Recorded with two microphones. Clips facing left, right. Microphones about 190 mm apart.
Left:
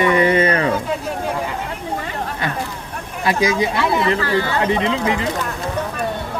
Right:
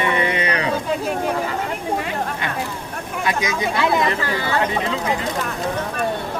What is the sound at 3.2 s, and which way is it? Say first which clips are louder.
Speech: left 6 dB; 30° left (ahead or behind).